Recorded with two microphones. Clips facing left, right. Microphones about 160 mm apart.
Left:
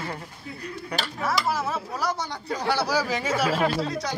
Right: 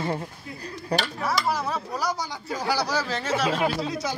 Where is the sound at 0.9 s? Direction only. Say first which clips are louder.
Right 1 dB; centre (ahead or behind).